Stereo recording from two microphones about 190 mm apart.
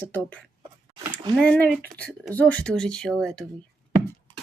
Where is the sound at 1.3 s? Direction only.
5° left (ahead or behind).